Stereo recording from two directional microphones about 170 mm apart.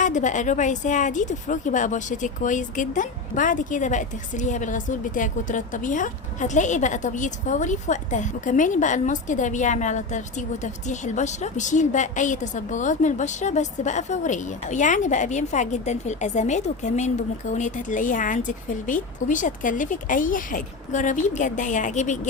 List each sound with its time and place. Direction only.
0.0 s a woman's voice: 45° left (ahead or behind)